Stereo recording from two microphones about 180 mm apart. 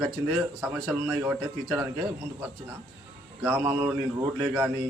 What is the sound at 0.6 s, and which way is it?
A man's voice, 5° right (ahead or behind).